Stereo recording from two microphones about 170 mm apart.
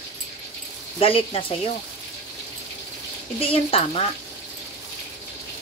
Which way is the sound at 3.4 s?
35° left (ahead or behind).